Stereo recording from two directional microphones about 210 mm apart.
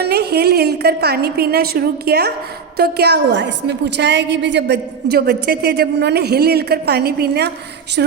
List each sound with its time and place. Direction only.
0.0 s a woman's voice: 50° right (ahead or behind)